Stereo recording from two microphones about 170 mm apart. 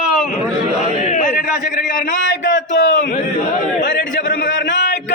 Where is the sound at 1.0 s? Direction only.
45° left (ahead or behind).